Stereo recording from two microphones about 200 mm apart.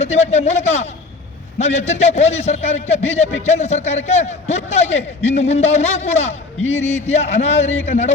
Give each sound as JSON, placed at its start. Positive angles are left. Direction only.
{"t": 0.0, "sound": "a man's voice", "side_deg": 35}